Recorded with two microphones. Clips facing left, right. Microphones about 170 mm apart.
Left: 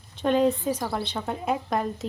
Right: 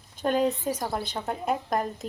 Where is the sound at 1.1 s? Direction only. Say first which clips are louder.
Even; centre (ahead or behind).